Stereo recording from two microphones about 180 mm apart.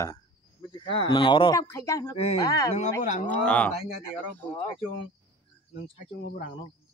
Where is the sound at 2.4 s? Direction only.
20° left (ahead or behind).